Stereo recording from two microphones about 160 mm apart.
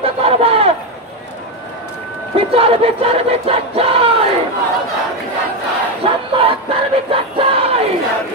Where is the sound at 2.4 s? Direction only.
35° right (ahead or behind).